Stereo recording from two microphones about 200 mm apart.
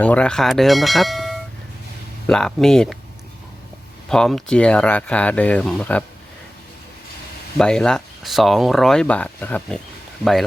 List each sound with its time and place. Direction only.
0.0 s speech: 5° left (ahead or behind)
4.1 s speech: 5° left (ahead or behind)
7.6 s speech: 5° left (ahead or behind)